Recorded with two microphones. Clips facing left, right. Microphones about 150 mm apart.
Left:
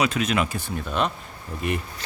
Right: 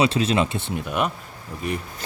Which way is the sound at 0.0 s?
30° right (ahead or behind).